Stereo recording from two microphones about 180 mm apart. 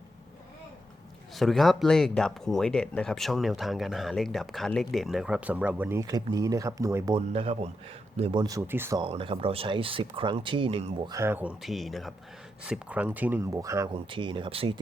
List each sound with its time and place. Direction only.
1.4 s speech: centre (ahead or behind); by 7.2 s 20° right (ahead or behind)
7.2 s speech: 35° right (ahead or behind); by 9.0 s 10° right (ahead or behind)
9.0 s speech: 30° right (ahead or behind)
11.1 s speech: 15° right (ahead or behind); by 14.8 s 30° right (ahead or behind)